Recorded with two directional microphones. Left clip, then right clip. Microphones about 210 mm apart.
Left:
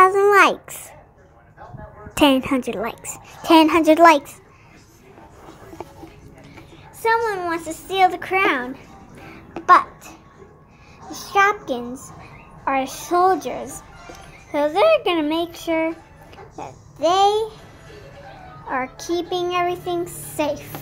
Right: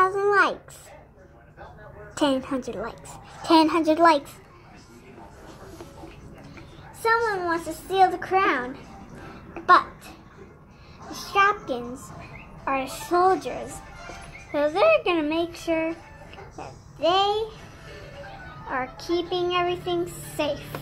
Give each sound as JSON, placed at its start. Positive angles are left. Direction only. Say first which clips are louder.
{"t": 0.0, "sound": "a sound", "louder": "left 7 dB", "side_deg": 30}
{"t": 2.1, "sound": "speech", "louder": "left 8 dB", "side_deg": 30}
{"t": 7.0, "sound": "a woman's voice", "louder": "left 3 dB", "side_deg": 35}
{"t": 18.7, "sound": "a woman's voice", "louder": "left 3 dB", "side_deg": 30}